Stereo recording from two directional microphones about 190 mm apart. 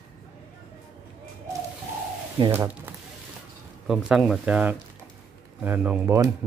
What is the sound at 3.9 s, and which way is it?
Speech, centre (ahead or behind).